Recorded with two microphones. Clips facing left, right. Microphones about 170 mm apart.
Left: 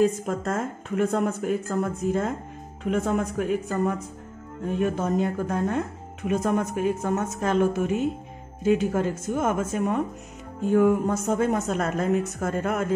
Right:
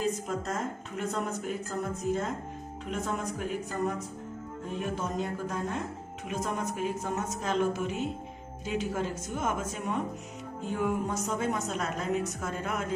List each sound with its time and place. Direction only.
0.0 s a woman's voice: 55° left (ahead or behind)